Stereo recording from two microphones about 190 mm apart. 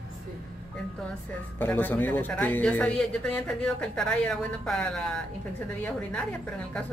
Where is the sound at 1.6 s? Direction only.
10° left (ahead or behind).